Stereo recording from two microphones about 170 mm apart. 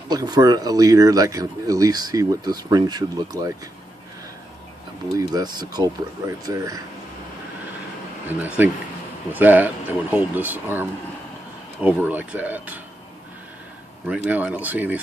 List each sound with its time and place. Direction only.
0.1 s speech: 25° right (ahead or behind)
5.1 s speech: 25° right (ahead or behind)
8.3 s speech: 10° right (ahead or behind)
14.0 s speech: 5° right (ahead or behind)